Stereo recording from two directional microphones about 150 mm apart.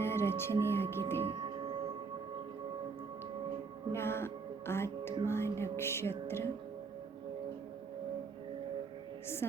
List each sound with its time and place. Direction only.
0.0 s music: 15° left (ahead or behind)
0.7 s speech: 15° left (ahead or behind)
1.2 s music: 35° right (ahead or behind)
3.9 s music: 15° left (ahead or behind)
9.4 s music: 20° left (ahead or behind)